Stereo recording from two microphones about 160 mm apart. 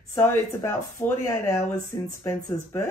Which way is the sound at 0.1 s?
15° left (ahead or behind).